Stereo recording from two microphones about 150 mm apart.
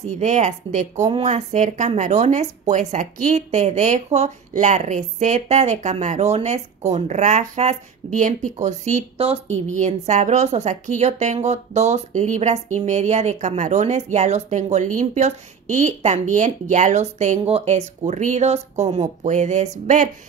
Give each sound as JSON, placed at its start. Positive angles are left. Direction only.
{"t": 0.0, "sound": "speech", "side_deg": -50}